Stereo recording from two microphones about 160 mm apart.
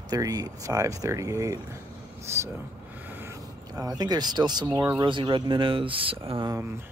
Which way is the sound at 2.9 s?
10° right (ahead or behind).